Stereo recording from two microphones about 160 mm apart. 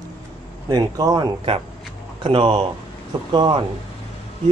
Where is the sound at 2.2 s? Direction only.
35° right (ahead or behind).